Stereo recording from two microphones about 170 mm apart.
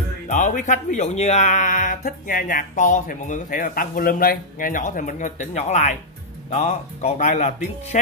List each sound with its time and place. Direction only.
0.3 s speech: 45° left (ahead or behind)